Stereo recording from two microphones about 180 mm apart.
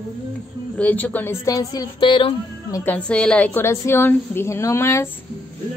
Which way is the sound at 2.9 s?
5° left (ahead or behind).